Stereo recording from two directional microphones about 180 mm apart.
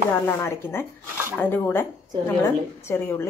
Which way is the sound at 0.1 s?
15° left (ahead or behind).